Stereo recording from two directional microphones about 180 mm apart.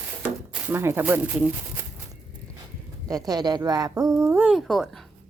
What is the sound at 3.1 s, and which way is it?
Speech, 20° right (ahead or behind).